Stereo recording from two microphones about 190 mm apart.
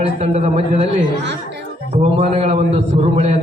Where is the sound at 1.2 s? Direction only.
65° right (ahead or behind).